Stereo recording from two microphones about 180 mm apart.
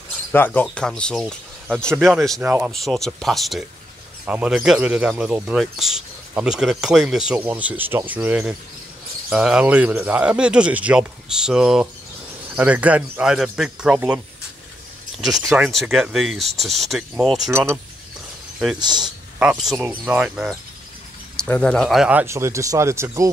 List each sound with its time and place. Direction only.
0.3 s speech: 10° left (ahead or behind)
2.4 s speech: 10° right (ahead or behind)
2.7 s speech: centre (ahead or behind)
15.2 s speech: centre (ahead or behind)
17.5 s speech: 15° right (ahead or behind)
18.8 s speech: 25° right (ahead or behind)
19.3 s speech: 5° right (ahead or behind)
21.4 s speech: 5° left (ahead or behind); by 23.3 s 15° right (ahead or behind)